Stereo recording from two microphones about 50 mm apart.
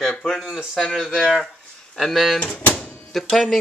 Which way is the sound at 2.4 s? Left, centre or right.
Left.